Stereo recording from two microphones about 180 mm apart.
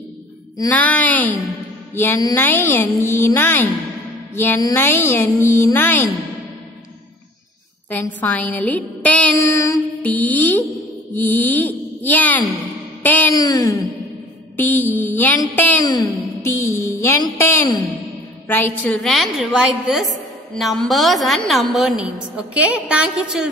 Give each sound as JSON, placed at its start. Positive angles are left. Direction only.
{"t": 0.7, "sound": "a woman's voice", "side_deg": 10}
{"t": 8.2, "sound": "a sound", "side_deg": 10}
{"t": 11.1, "sound": "a woman's voice", "side_deg": 10}
{"t": 18.9, "sound": "a woman's voice", "side_deg": 0}